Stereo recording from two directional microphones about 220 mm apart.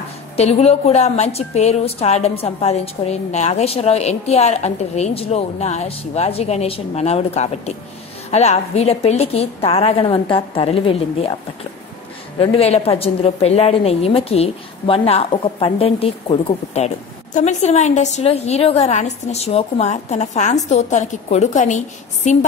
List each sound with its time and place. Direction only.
0.4 s a woman's voice: 30° left (ahead or behind)
12.4 s a woman's voice: 25° left (ahead or behind)